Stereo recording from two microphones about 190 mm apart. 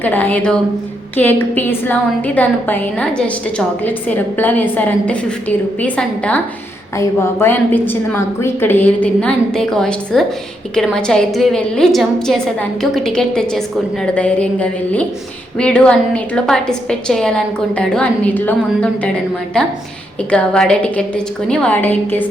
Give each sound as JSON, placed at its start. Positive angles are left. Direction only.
{"t": 0.0, "sound": "a woman's voice", "side_deg": 10}